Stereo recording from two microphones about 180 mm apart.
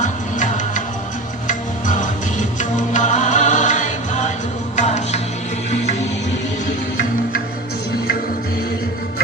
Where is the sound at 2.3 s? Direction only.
40° left (ahead or behind).